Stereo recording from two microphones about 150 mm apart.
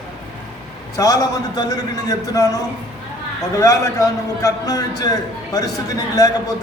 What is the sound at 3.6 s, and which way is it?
A man's voice, 20° left (ahead or behind).